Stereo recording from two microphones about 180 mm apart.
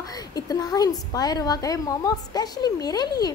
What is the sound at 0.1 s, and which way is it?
A woman's voice, 20° left (ahead or behind).